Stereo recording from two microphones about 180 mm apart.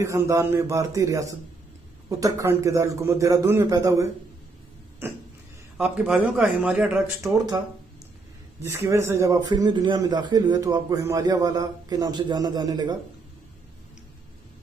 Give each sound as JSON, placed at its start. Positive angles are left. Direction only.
{"t": 0.0, "sound": "a man's voice", "side_deg": -15}
{"t": 8.6, "sound": "a man's voice", "side_deg": -15}